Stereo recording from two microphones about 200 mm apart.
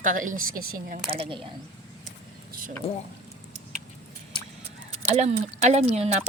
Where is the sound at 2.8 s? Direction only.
30° left (ahead or behind).